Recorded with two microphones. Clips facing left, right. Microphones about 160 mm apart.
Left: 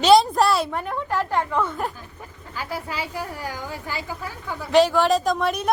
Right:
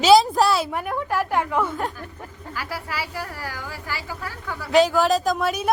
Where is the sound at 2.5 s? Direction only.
20° left (ahead or behind).